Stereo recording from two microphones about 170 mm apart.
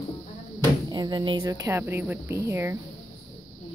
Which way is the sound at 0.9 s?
25° right (ahead or behind).